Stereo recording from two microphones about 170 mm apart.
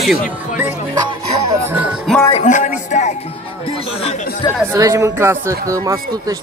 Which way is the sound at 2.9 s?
45° left (ahead or behind).